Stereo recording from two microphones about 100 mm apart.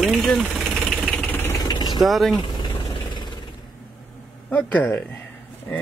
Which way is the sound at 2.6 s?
50° left (ahead or behind).